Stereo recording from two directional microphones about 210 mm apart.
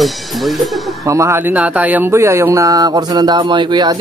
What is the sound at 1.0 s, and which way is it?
Speech, 15° right (ahead or behind).